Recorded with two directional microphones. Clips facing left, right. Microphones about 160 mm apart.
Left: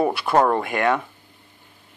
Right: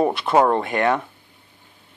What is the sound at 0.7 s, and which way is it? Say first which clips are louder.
Speech: even; 30° right (ahead or behind).